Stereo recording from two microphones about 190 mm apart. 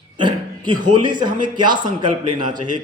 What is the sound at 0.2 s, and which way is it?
Speech, 25° right (ahead or behind).